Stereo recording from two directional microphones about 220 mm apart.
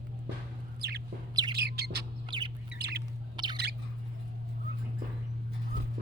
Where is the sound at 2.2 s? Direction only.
20° right (ahead or behind).